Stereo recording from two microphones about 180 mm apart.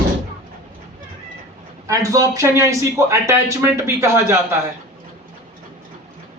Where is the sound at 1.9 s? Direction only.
20° right (ahead or behind).